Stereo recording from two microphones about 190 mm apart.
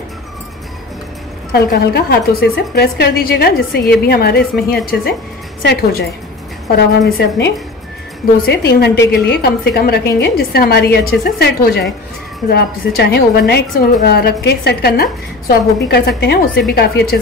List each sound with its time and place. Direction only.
1.5 s a woman's voice: 55° left (ahead or behind)